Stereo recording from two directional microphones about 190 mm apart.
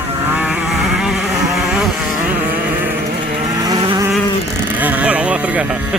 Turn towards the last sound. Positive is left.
turn(degrees=-5)  # may be behind; listen again after turning